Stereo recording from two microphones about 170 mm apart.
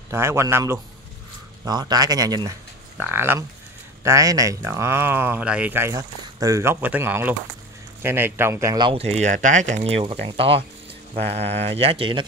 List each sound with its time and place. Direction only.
0.1 s speech: 15° right (ahead or behind)
9.2 s speech: 45° right (ahead or behind); by 12.3 s 30° right (ahead or behind)